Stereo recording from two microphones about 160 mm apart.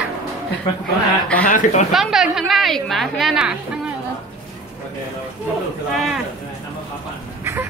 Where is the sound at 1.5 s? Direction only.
50° left (ahead or behind).